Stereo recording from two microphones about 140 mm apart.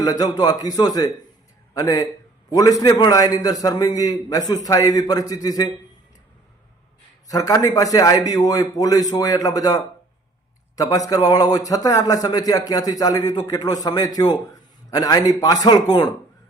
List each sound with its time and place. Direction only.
0.0 s a man's voice: 25° left (ahead or behind)
7.3 s a man's voice: 25° left (ahead or behind)